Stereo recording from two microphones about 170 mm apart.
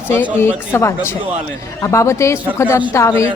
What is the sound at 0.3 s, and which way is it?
Speech, 15° left (ahead or behind).